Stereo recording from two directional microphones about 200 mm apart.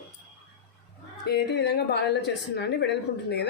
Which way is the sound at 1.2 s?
55° left (ahead or behind).